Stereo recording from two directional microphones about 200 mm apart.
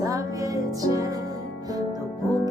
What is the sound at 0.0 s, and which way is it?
Music, 15° right (ahead or behind).